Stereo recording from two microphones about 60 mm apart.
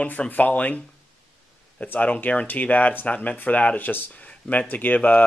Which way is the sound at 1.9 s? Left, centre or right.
Left.